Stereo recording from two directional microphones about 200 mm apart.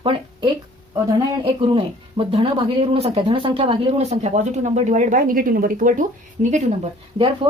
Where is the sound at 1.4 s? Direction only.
25° right (ahead or behind); by 6.0 s 40° right (ahead or behind).